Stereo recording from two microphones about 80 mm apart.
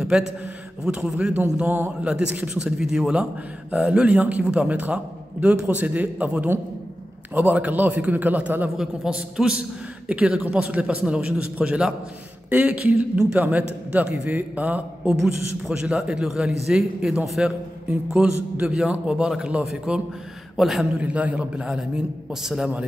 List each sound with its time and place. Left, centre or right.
0.1 s a man's voice: centre
8.6 s a man's voice: centre
20.5 s a man's voice: centre
21.0 s a man's voice: centre